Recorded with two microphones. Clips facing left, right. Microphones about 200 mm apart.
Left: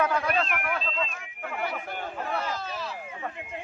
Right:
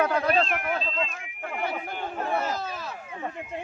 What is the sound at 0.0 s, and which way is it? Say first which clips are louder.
Speech: right 3 dB; 35° right (ahead or behind).